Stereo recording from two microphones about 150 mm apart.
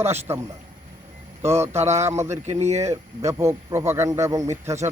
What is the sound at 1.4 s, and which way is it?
Speech, 15° right (ahead or behind).